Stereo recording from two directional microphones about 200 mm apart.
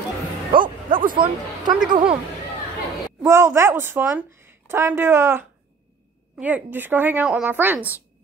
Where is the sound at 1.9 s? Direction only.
25° right (ahead or behind).